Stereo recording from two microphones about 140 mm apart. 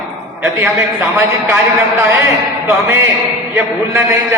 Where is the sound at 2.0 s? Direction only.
20° right (ahead or behind).